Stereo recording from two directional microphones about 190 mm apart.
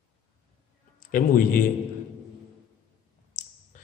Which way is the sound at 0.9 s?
45° left (ahead or behind).